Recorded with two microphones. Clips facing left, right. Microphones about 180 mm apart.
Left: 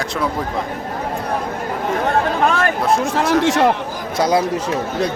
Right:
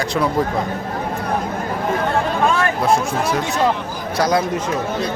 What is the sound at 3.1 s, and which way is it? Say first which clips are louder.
Speech: left 5 dB; 90° left.